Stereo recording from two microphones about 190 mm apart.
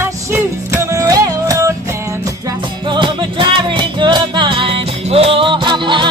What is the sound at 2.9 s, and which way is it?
Music, 25° right (ahead or behind).